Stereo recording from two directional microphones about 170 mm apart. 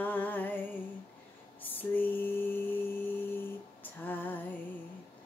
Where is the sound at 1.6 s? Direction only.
10° left (ahead or behind).